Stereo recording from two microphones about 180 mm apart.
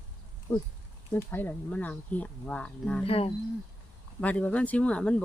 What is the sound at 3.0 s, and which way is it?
Speech, 30° left (ahead or behind).